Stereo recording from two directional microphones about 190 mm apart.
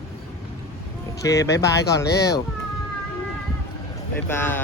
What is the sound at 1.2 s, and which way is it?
Speech, 15° left (ahead or behind).